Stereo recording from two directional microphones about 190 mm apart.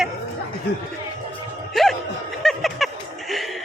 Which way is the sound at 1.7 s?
Centre (ahead or behind).